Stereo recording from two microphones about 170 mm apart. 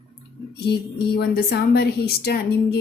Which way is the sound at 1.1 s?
65° left (ahead or behind).